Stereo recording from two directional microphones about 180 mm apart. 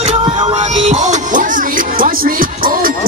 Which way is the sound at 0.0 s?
30° right (ahead or behind).